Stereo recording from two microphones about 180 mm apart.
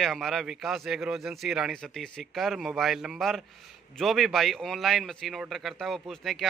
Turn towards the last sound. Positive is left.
turn(degrees=0)  # may be behind; listen again after turning